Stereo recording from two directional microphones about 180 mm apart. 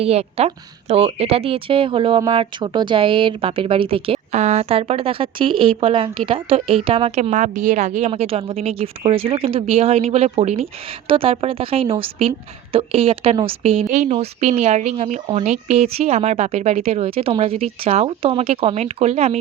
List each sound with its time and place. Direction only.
0.0 s speech: 35° right (ahead or behind)